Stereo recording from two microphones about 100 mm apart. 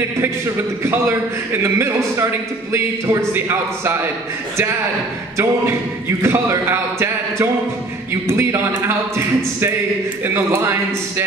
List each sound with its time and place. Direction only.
0.8 s speech: 25° right (ahead or behind)
5.4 s speech: 25° right (ahead or behind)